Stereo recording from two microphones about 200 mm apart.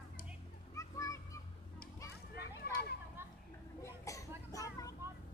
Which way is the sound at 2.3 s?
55° left (ahead or behind).